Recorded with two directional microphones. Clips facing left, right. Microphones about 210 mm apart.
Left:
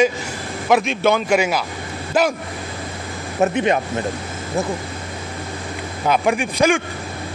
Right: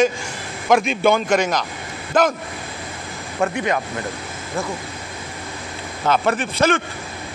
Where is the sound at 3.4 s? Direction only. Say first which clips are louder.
Left 4 dB; 20° left (ahead or behind).